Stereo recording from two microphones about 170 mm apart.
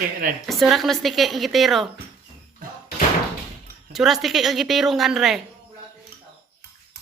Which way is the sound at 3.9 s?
Centre (ahead or behind).